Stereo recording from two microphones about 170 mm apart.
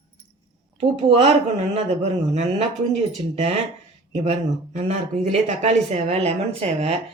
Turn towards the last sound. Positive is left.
turn(degrees=-35)  # may be behind; listen again after turning